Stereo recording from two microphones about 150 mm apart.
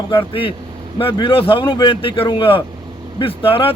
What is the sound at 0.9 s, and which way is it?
Speech, 35° left (ahead or behind).